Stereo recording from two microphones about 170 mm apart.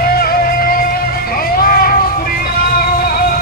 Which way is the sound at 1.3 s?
60° left (ahead or behind).